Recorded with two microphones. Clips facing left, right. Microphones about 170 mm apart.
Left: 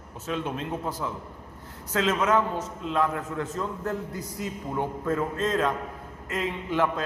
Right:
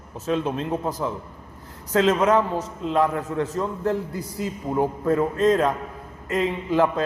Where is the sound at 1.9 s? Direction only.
35° right (ahead or behind).